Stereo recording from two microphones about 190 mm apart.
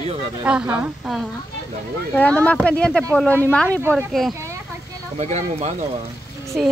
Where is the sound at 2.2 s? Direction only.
5° left (ahead or behind).